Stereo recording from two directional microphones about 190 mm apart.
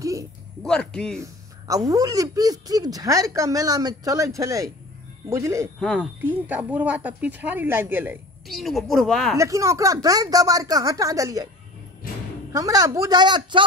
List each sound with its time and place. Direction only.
0.0 s a sound: 15° right (ahead or behind)
0.6 s a woman's voice: 5° left (ahead or behind)
1.2 s speech: 20° right (ahead or behind)
5.8 s a woman's voice: 5° left (ahead or behind)
6.2 s speech: 10° right (ahead or behind)
8.5 s a woman's voice: centre (ahead or behind)
9.4 s speech: 15° right (ahead or behind)
12.5 s speech: 20° right (ahead or behind)